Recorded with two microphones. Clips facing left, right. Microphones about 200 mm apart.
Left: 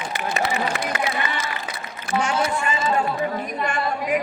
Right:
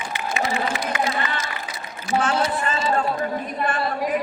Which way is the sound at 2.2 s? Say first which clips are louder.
Even; 15° left (ahead or behind).